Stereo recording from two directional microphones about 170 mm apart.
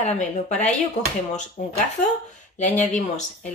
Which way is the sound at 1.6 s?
55° left (ahead or behind).